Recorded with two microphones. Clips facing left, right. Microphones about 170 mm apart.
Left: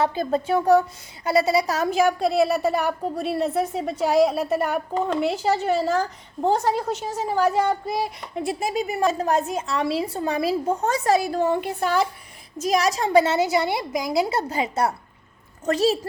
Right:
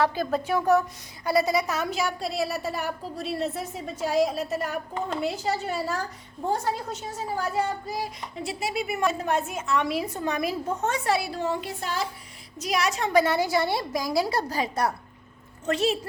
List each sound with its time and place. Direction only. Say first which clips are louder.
0.0 s a woman's voice: left 2 dB; 25° left (ahead or behind)
1.9 s a woman's voice: left 9 dB; 50° left (ahead or behind)
5.0 s a woman's voice: left 5 dB; 70° left (ahead or behind)
12.5 s a woman's voice: left 5 dB; 40° left (ahead or behind); by 14.9 s 25° left (ahead or behind)
15.6 s a woman's voice: left 4 dB; 40° left (ahead or behind)